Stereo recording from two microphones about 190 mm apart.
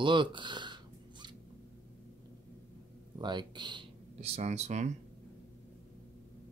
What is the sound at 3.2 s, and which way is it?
Speech, 25° right (ahead or behind).